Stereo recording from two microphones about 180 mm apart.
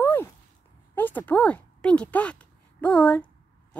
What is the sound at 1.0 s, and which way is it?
A woman's voice, 10° left (ahead or behind).